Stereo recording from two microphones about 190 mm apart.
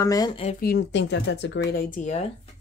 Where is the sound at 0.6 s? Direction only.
60° left (ahead or behind); by 2.2 s 40° left (ahead or behind).